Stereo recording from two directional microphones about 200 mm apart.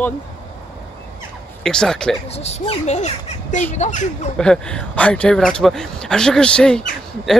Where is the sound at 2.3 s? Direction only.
30° left (ahead or behind).